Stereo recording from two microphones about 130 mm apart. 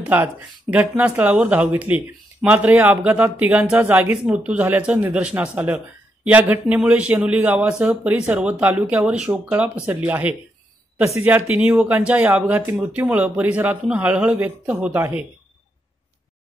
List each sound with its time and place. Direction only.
0.0 s speech: 10° right (ahead or behind)